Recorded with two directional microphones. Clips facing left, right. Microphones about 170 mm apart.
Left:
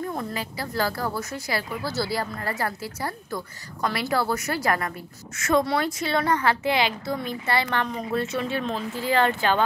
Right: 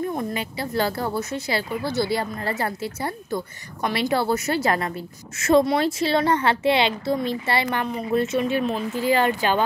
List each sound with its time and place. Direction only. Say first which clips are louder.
0.0 s speech: right 4 dB; 20° right (ahead or behind)
7.7 s speech: right 3 dB; 10° right (ahead or behind)